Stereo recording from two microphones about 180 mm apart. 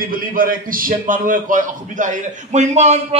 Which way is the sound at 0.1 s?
50° right (ahead or behind).